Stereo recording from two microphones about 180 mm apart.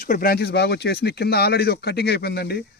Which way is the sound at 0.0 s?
50° left (ahead or behind).